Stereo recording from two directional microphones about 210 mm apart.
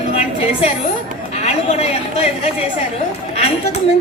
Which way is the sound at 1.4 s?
30° left (ahead or behind).